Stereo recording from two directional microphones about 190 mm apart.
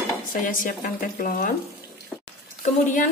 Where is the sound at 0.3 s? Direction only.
45° left (ahead or behind).